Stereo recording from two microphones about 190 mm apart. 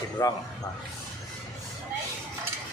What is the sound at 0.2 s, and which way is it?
Speech, 20° left (ahead or behind).